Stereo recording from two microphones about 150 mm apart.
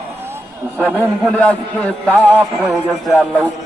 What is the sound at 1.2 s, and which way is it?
A man's voice, 10° left (ahead or behind).